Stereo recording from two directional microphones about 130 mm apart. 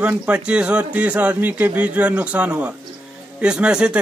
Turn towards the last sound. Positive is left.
turn(degrees=-5)  # may be behind; listen again after turning